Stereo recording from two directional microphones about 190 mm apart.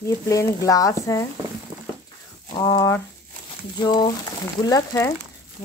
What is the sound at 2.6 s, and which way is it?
Speech, 15° left (ahead or behind).